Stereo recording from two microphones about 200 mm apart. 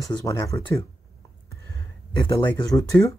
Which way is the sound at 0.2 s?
15° left (ahead or behind).